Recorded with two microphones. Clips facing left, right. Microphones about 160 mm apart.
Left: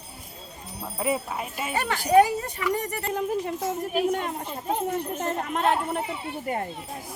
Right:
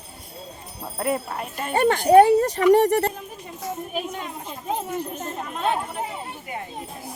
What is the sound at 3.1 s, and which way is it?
Speech, 85° left.